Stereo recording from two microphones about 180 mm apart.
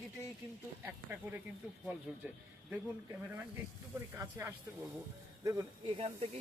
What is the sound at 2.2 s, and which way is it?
Speech, 5° right (ahead or behind).